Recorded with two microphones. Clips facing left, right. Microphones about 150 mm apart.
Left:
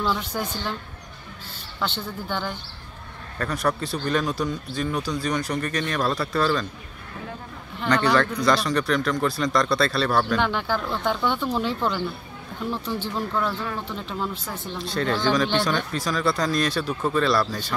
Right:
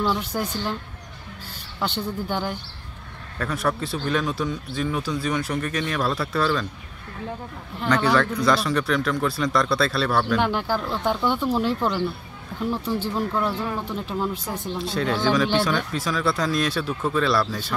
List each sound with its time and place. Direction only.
0.0 s speech: 5° right (ahead or behind)
1.8 s speech: 10° right (ahead or behind)
7.8 s speech: 5° right (ahead or behind)